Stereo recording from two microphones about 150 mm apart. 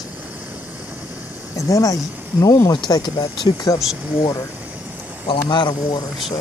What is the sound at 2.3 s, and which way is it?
Speech, 15° left (ahead or behind).